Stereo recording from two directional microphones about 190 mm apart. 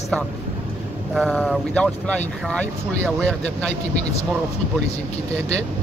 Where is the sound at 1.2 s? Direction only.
Centre (ahead or behind).